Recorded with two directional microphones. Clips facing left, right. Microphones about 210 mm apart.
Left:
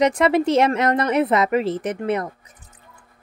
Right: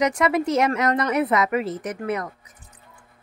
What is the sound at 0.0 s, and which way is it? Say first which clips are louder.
A woman's voice: left 4 dB; 30° left (ahead or behind).